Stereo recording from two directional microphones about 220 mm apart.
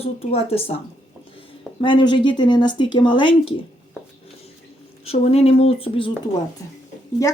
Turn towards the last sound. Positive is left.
turn(degrees=15)  # may be behind; listen again after turning